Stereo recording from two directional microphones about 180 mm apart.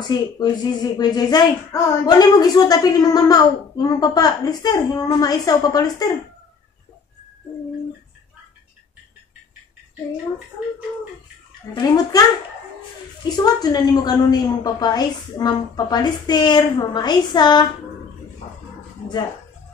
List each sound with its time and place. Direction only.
0.1 s speech: 25° left (ahead or behind)
11.7 s speech: 20° left (ahead or behind)
13.4 s speech: 20° left (ahead or behind)